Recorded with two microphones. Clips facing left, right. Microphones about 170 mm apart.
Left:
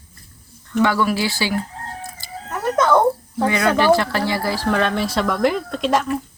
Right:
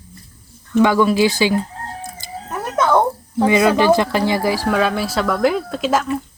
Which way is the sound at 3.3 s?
20° right (ahead or behind).